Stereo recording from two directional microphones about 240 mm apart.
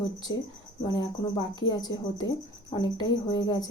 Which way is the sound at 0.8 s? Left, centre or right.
Centre.